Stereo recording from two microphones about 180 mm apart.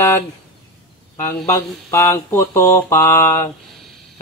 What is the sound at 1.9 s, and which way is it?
Mantra, 15° left (ahead or behind).